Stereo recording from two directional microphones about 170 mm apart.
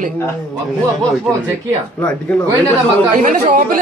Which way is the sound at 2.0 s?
10° left (ahead or behind).